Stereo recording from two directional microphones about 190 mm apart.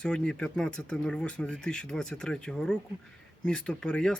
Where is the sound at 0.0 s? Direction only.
5° left (ahead or behind).